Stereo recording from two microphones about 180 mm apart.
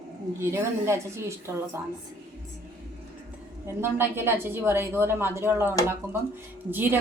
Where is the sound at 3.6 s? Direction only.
10° right (ahead or behind).